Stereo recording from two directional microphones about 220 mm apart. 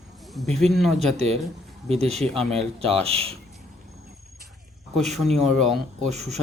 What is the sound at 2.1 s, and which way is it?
Speech, centre (ahead or behind).